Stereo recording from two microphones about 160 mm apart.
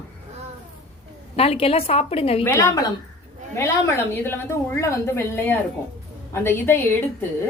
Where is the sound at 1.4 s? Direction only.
35° left (ahead or behind).